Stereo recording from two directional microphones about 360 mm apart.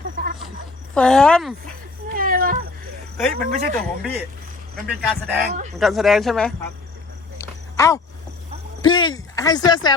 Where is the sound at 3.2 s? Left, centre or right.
Centre.